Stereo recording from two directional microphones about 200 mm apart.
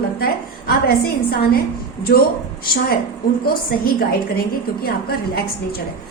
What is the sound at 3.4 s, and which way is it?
A woman's voice, 50° left (ahead or behind).